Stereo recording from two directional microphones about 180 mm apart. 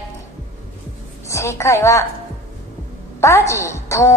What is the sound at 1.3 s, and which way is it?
Speech, 15° left (ahead or behind).